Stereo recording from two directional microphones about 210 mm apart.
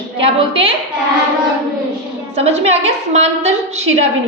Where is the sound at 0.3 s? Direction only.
25° right (ahead or behind).